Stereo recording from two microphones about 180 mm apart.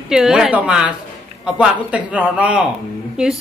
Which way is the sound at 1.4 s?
5° right (ahead or behind).